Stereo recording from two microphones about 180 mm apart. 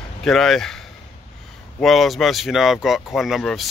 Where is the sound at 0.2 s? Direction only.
Centre (ahead or behind).